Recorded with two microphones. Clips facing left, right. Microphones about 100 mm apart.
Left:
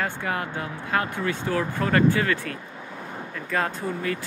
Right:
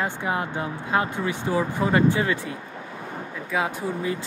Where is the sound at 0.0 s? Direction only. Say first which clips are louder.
Right 2 dB; 20° right (ahead or behind).